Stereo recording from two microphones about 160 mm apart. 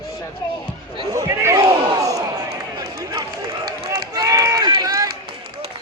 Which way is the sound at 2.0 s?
20° right (ahead or behind).